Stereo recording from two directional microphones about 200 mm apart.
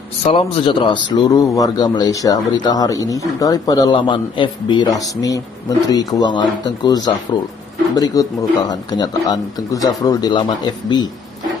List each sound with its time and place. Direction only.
0.2 s speech: 30° left (ahead or behind)